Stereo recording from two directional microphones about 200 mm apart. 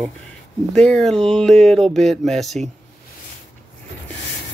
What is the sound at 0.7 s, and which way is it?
Speech, 5° left (ahead or behind).